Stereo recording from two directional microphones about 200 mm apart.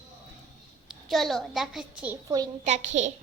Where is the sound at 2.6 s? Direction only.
35° right (ahead or behind).